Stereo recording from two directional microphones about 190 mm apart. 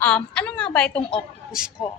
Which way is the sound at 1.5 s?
5° right (ahead or behind).